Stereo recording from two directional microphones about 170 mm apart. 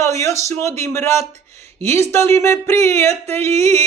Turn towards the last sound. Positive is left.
turn(degrees=15)  # may be behind; listen again after turning